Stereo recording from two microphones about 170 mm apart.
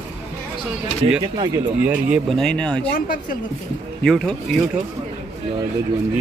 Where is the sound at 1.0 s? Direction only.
30° right (ahead or behind).